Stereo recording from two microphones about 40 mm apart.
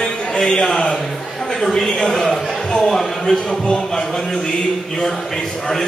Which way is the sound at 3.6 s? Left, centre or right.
Left.